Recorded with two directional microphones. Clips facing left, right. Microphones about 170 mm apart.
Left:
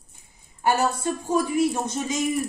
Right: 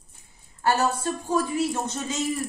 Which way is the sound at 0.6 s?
15° left (ahead or behind).